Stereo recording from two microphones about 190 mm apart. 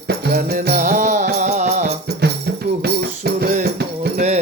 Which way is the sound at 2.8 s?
60° right (ahead or behind).